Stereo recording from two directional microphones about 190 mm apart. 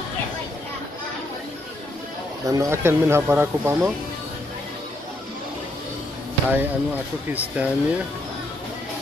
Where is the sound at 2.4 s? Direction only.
15° right (ahead or behind).